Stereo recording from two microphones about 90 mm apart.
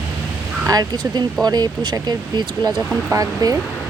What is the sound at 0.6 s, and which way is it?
Speech, 45° right (ahead or behind).